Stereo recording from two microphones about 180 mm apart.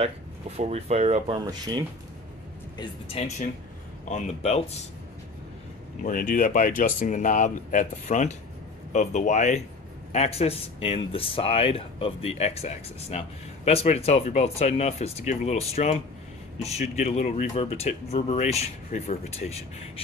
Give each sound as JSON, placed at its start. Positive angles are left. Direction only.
{"t": 0.0, "sound": "speech", "side_deg": -35}
{"t": 2.8, "sound": "speech", "side_deg": 35}
{"t": 6.0, "sound": "speech", "side_deg": 50}